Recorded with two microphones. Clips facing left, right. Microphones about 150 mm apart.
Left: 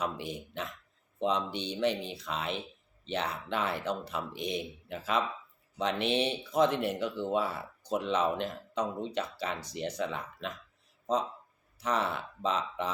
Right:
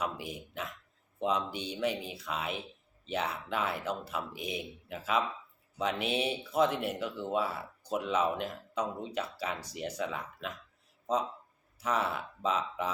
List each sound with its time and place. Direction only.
0.0 s speech: 5° right (ahead or behind)
11.0 s a sound: 5° right (ahead or behind)
11.8 s speech: 5° right (ahead or behind)